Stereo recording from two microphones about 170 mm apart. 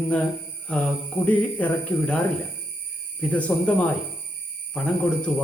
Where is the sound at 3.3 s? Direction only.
10° left (ahead or behind).